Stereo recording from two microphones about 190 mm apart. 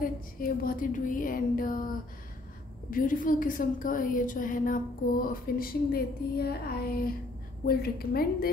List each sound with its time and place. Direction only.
0.0 s a woman's voice: 50° left (ahead or behind)